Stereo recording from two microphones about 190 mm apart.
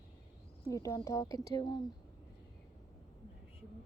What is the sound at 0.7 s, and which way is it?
Speech, 15° left (ahead or behind).